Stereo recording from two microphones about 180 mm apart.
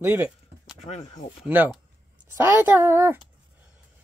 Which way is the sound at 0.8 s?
40° left (ahead or behind).